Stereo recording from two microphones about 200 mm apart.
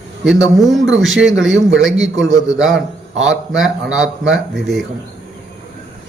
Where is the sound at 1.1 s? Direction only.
65° right (ahead or behind).